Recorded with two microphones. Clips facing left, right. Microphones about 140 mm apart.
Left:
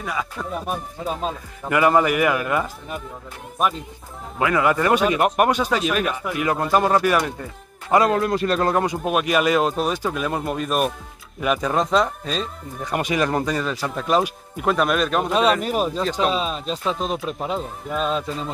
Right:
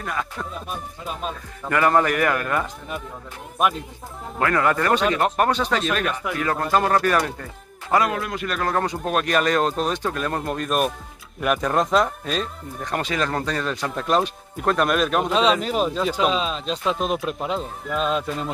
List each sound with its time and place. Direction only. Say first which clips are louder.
0.0 s speech: left 1 dB; 5° left (ahead or behind)
1.7 s speech: left 2 dB; 10° left (ahead or behind)
4.4 s speech: left 1 dB; 10° left (ahead or behind)
7.9 s a man's voice: left 4 dB; 30° left (ahead or behind)
8.7 s speech: left 2 dB; 10° left (ahead or behind)
12.8 s speech: left 3 dB; 10° left (ahead or behind)
16.0 s speech: even; 5° right (ahead or behind)
16.3 s speech: even; 5° left (ahead or behind)